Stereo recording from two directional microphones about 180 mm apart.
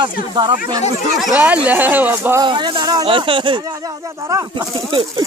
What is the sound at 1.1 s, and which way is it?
Speech, 5° right (ahead or behind).